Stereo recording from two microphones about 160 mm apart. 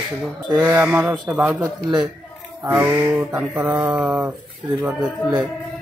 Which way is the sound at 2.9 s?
15° right (ahead or behind).